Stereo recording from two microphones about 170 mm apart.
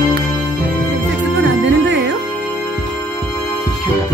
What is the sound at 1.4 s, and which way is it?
Music, 90° right.